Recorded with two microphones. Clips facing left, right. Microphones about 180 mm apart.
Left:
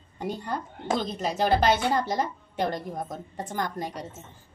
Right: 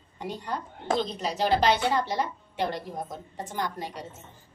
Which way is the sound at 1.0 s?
50° left (ahead or behind).